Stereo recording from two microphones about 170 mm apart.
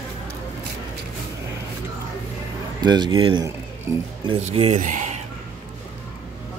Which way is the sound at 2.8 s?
25° right (ahead or behind).